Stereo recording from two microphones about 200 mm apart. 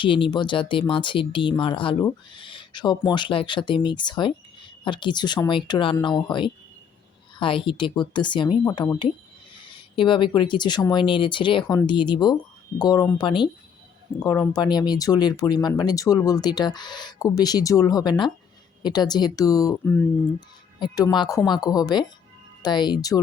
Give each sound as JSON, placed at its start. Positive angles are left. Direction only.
{"t": 0.0, "sound": "speech", "side_deg": 25}
{"t": 20.7, "sound": "speech", "side_deg": 20}